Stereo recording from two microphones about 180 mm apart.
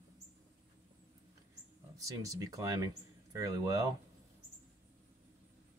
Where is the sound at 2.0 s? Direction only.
20° right (ahead or behind).